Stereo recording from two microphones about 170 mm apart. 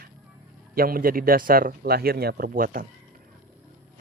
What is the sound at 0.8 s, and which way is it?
Speech, 60° right (ahead or behind).